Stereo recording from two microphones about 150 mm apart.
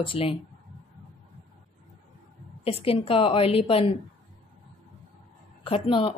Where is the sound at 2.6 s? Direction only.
40° left (ahead or behind).